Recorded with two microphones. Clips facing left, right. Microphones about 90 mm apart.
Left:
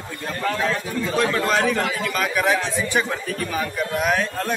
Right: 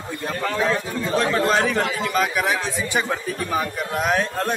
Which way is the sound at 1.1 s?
30° right (ahead or behind).